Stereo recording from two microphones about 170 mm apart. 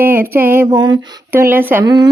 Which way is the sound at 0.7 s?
25° right (ahead or behind).